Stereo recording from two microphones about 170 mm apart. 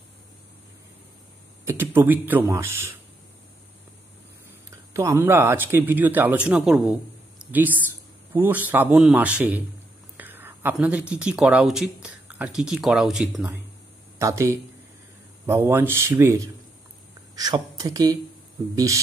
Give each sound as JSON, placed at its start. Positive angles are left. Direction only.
{"t": 1.7, "sound": "speech", "side_deg": -15}
{"t": 4.9, "sound": "speech", "side_deg": -15}
{"t": 14.1, "sound": "speech", "side_deg": -15}